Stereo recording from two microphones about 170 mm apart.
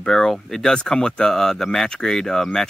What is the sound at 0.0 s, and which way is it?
Speech, 5° left (ahead or behind).